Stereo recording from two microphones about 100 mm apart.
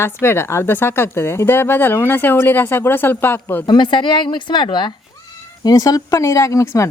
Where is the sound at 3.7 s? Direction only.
50° left (ahead or behind).